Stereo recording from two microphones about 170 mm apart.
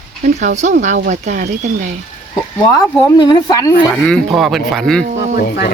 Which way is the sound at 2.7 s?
20° left (ahead or behind).